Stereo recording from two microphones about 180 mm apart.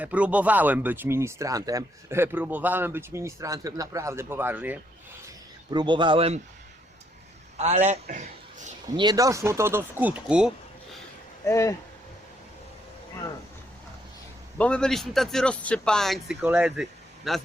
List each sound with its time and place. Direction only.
0.0 s speech: 5° right (ahead or behind)
5.7 s speech: 25° right (ahead or behind)
7.5 s a man's voice: 40° right (ahead or behind)
8.1 s a sound: 40° right (ahead or behind)
9.0 s speech: 20° right (ahead or behind); by 10.5 s 5° right (ahead or behind)
11.4 s speech: 15° left (ahead or behind)
14.6 s speech: 5° left (ahead or behind)